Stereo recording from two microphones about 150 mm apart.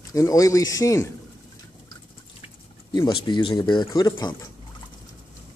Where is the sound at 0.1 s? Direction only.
20° left (ahead or behind).